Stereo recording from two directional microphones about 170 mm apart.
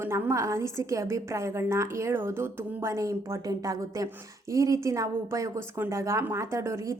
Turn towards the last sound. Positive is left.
turn(degrees=-15)  # may be behind; listen again after turning